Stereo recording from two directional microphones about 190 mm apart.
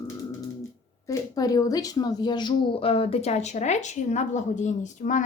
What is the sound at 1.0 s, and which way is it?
A woman's voice, 20° left (ahead or behind).